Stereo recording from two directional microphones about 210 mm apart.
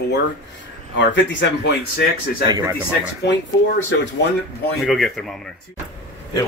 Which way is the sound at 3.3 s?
55° left (ahead or behind).